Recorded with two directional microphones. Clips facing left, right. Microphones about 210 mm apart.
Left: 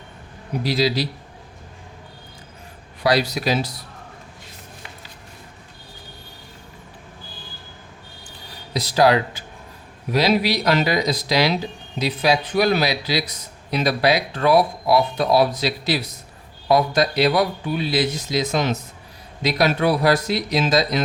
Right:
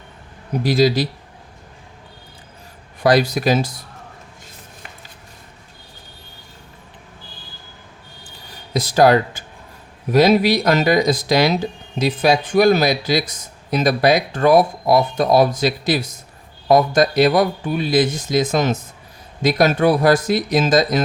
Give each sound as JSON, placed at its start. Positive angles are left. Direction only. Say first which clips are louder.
{"t": 0.6, "sound": "speech", "louder": "right 5 dB", "side_deg": -50}
{"t": 3.0, "sound": "speech", "louder": "right 4 dB", "side_deg": -50}
{"t": 8.7, "sound": "speech", "louder": "right 3 dB", "side_deg": -50}